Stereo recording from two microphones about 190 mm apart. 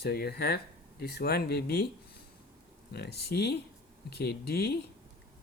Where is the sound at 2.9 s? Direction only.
60° left (ahead or behind).